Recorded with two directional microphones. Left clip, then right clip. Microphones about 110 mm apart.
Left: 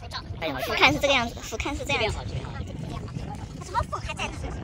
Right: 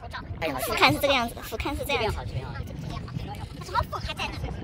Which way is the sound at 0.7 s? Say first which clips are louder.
Left 1 dB; 10° right (ahead or behind).